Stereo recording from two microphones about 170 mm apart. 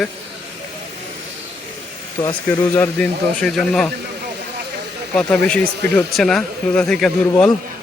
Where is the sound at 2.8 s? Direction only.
10° left (ahead or behind).